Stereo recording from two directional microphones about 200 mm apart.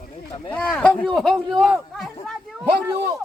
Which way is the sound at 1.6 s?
Centre (ahead or behind).